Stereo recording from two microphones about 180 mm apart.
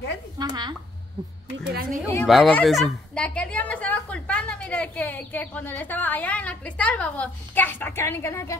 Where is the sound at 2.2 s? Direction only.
Centre (ahead or behind).